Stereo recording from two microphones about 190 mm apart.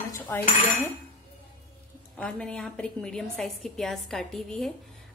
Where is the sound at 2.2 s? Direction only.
5° left (ahead or behind).